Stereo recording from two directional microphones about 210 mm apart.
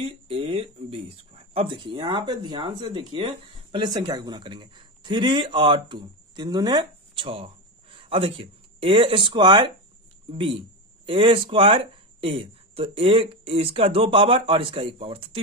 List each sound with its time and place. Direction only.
0.0 s speech: 30° right (ahead or behind)